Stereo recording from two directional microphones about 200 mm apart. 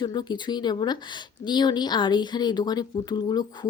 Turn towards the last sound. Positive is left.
turn(degrees=20)  # may be behind; listen again after turning